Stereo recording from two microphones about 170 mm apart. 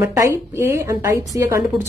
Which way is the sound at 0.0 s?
15° right (ahead or behind).